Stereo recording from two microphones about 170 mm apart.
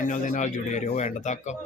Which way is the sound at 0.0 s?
50° left (ahead or behind).